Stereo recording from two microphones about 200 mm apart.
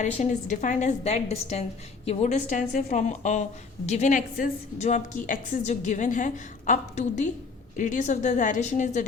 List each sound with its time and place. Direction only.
0.0 s a woman's voice: 35° left (ahead or behind)